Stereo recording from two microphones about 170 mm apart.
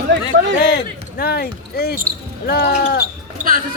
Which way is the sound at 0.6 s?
65° left (ahead or behind).